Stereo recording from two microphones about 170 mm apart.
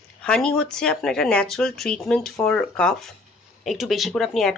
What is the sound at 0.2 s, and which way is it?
Speech, 5° left (ahead or behind).